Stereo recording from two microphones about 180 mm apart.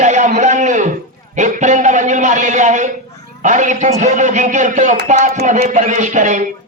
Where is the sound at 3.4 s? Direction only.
45° right (ahead or behind).